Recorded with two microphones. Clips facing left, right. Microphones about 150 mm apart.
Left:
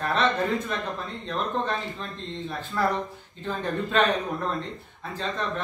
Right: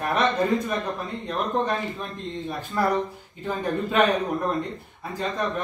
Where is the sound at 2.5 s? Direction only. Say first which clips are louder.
Right 2 dB; 10° right (ahead or behind).